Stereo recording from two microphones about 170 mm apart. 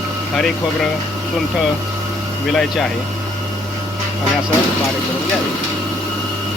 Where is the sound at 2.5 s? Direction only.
Centre (ahead or behind).